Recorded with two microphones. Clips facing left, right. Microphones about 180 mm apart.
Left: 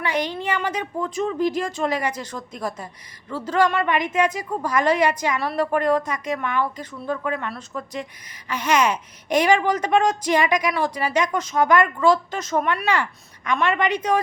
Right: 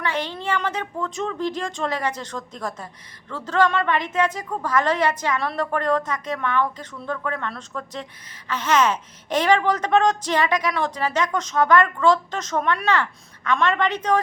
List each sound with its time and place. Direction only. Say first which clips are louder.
0.0 s speech: left 2 dB; 15° left (ahead or behind)